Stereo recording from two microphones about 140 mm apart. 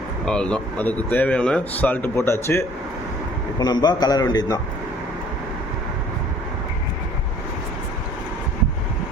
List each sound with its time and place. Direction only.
0.3 s a man's voice: 5° left (ahead or behind); by 4.6 s 30° left (ahead or behind)